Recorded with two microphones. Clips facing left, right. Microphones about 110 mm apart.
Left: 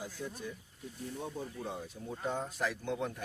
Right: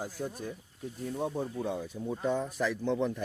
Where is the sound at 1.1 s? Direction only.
75° right (ahead or behind).